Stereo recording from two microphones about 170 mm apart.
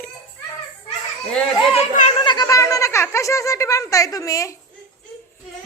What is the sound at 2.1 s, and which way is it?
Speech, 25° left (ahead or behind).